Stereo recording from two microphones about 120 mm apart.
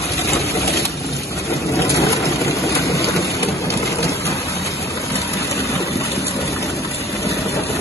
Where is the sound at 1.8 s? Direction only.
25° left (ahead or behind).